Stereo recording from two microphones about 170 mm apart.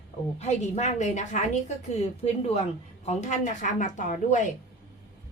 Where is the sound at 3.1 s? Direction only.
45° left (ahead or behind).